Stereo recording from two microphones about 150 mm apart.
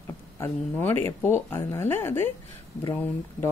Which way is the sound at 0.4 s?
15° left (ahead or behind).